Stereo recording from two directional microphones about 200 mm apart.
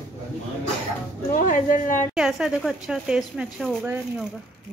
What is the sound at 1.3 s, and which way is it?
Speech, 40° left (ahead or behind).